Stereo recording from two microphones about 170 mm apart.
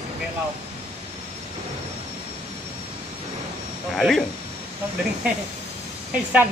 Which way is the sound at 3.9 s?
Centre (ahead or behind).